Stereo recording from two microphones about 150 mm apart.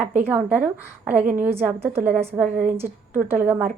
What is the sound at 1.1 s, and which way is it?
Speech, 60° right (ahead or behind).